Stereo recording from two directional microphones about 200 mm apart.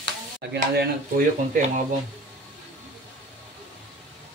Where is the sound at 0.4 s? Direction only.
55° right (ahead or behind).